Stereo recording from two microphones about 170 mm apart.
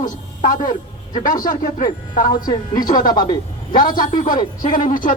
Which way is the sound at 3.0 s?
25° left (ahead or behind).